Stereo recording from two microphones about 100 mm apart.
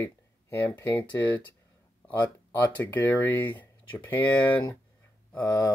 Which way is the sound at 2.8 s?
20° left (ahead or behind).